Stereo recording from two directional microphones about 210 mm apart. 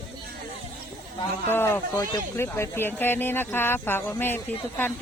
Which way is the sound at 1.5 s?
10° left (ahead or behind).